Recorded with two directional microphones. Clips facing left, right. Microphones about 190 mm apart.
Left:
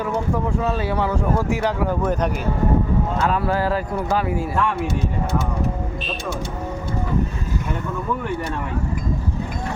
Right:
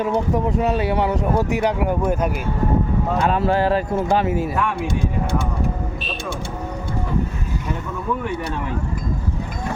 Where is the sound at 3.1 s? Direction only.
20° right (ahead or behind).